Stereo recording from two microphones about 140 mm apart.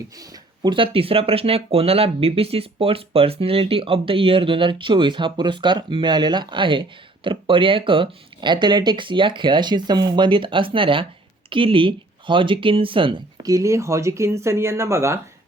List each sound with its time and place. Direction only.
0.6 s speech: 35° right (ahead or behind)
13.4 s speech: 25° right (ahead or behind)